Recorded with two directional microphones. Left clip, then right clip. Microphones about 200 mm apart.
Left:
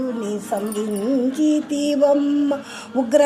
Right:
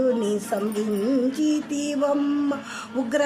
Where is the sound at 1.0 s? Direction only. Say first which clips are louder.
Left 5 dB; 5° left (ahead or behind).